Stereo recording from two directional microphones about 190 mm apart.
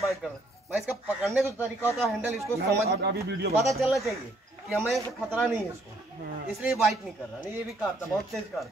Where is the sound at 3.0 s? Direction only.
60° right (ahead or behind).